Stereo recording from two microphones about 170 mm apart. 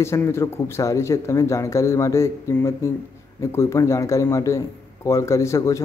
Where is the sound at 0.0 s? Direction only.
15° left (ahead or behind).